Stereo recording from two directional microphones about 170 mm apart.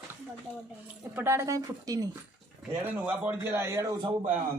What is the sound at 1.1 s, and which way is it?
Speech, 15° right (ahead or behind).